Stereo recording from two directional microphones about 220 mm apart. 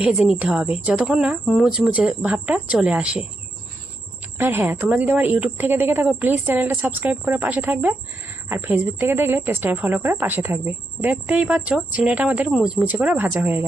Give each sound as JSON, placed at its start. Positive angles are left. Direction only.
{"t": 0.0, "sound": "speech", "side_deg": -5}
{"t": 4.4, "sound": "speech", "side_deg": -10}